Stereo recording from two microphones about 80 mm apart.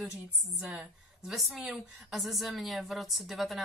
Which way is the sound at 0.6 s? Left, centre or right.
Centre.